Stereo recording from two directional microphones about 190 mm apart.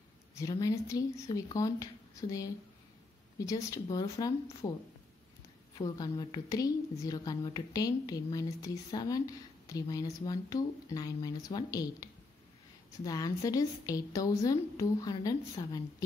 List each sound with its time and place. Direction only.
0.4 s a woman's voice: 15° left (ahead or behind)
5.8 s a woman's voice: 20° left (ahead or behind)